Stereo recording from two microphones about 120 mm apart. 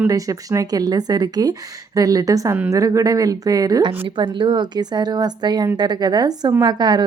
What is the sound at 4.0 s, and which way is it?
A woman's voice, 40° right (ahead or behind).